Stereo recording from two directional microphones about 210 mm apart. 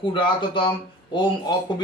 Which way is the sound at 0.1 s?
25° left (ahead or behind).